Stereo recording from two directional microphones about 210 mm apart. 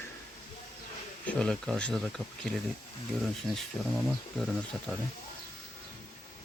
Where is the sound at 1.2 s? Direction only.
Centre (ahead or behind).